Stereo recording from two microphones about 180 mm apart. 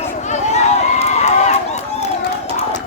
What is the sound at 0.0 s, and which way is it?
Run, 40° left (ahead or behind).